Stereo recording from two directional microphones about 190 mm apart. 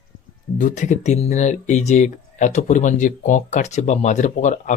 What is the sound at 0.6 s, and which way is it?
Speech, 40° left (ahead or behind).